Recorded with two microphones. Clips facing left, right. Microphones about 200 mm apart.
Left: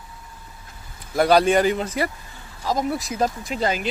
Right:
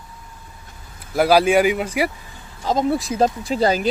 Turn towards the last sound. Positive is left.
turn(degrees=-35)  # may be behind; listen again after turning